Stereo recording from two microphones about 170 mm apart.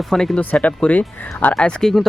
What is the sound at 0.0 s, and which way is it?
Speech, centre (ahead or behind).